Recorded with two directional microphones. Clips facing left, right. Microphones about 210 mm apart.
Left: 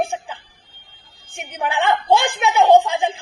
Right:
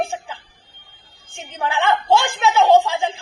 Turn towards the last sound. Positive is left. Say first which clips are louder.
# left 1 dB
turn(degrees=15)  # may be behind; listen again after turning